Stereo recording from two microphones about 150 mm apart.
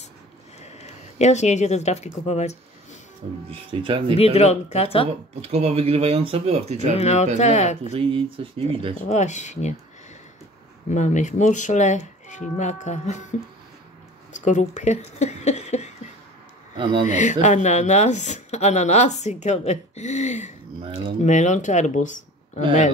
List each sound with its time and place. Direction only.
0.6 s a sound: 45° left (ahead or behind)
2.2 s a woman's voice: 45° left (ahead or behind)
3.4 s speech: 35° right (ahead or behind)
4.2 s a woman's voice: 45° left (ahead or behind)
5.0 s speech: 40° right (ahead or behind)
7.0 s a woman's voice: 45° left (ahead or behind)
7.8 s speech: 35° right (ahead or behind)
9.1 s a woman's voice: 50° left (ahead or behind)
10.9 s a woman's voice: 55° left (ahead or behind)
14.3 s a woman's voice: 55° left (ahead or behind)
16.7 s speech: 30° right (ahead or behind)
17.1 s a woman's voice: 55° left (ahead or behind)